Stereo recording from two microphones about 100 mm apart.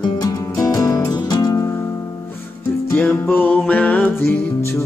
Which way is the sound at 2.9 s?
15° left (ahead or behind).